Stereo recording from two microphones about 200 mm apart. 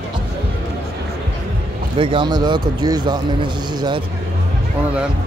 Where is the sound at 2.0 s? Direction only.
25° right (ahead or behind).